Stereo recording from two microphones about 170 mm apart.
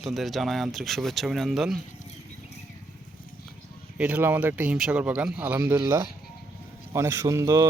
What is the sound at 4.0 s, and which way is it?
Speech, 10° right (ahead or behind).